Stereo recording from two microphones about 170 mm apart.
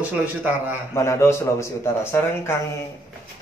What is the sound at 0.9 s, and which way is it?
Speech, 15° left (ahead or behind).